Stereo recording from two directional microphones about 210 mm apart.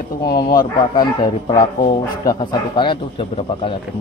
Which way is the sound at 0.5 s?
20° left (ahead or behind).